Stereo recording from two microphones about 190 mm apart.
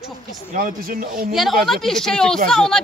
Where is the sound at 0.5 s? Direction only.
45° right (ahead or behind).